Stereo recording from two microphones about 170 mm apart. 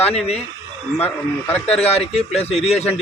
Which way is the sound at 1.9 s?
35° left (ahead or behind).